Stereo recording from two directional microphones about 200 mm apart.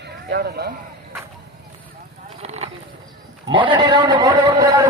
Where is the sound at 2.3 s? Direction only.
30° right (ahead or behind).